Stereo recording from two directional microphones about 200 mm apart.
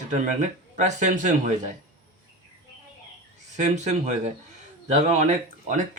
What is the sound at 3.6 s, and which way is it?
Speech, 35° right (ahead or behind).